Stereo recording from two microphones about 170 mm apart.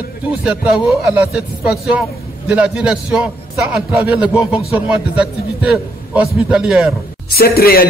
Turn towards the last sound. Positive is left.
turn(degrees=65)  # may be behind; listen again after turning